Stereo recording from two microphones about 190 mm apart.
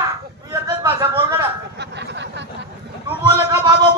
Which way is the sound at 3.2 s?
20° right (ahead or behind).